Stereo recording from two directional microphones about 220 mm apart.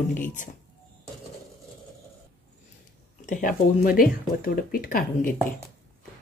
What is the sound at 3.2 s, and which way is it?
Speech, 35° left (ahead or behind).